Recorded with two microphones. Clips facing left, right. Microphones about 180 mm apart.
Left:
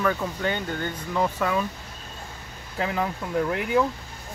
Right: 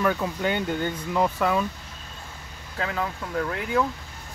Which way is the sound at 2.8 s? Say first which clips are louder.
Left 2 dB; 15° left (ahead or behind).